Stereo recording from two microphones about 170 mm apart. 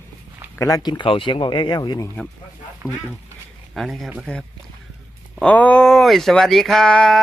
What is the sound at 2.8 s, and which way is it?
Speech, 15° right (ahead or behind).